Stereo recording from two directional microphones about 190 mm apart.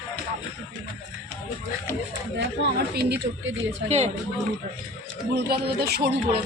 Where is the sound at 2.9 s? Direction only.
60° right (ahead or behind).